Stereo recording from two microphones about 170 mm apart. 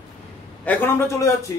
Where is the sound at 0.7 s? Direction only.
15° left (ahead or behind).